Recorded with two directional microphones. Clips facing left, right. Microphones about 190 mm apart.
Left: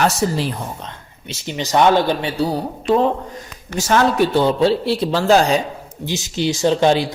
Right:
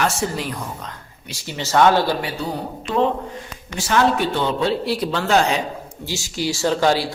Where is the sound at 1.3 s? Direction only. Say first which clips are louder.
Left 2 dB; 20° left (ahead or behind).